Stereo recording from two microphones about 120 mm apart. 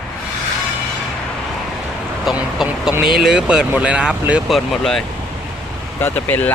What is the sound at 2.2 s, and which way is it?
Speech, 5° right (ahead or behind).